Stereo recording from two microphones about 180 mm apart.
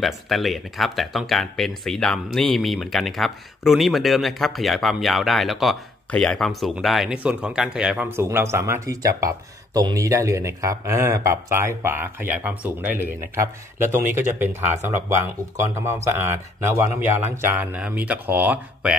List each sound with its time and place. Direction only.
0.0 s speech: centre (ahead or behind)